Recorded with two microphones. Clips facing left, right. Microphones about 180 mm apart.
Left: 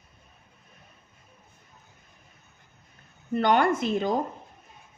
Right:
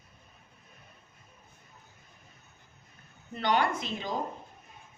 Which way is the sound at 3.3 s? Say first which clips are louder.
Left 6 dB; 50° left (ahead or behind).